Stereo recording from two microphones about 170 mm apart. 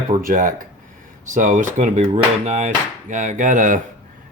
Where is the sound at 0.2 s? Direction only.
55° right (ahead or behind).